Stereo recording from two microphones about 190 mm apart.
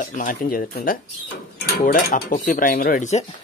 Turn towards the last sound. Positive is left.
turn(degrees=40)  # may be behind; listen again after turning